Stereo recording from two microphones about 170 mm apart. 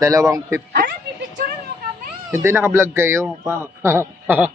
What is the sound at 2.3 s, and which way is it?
Speech, 15° right (ahead or behind).